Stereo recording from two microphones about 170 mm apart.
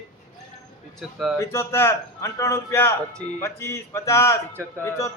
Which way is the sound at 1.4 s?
15° left (ahead or behind).